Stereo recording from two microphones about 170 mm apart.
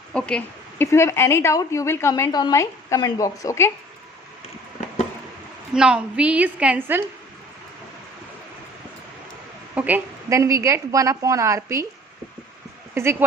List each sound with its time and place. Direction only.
0.1 s a woman's voice: 5° left (ahead or behind)
5.7 s a woman's voice: 5° right (ahead or behind)
9.7 s a woman's voice: 10° right (ahead or behind)
12.9 s speech: 15° right (ahead or behind)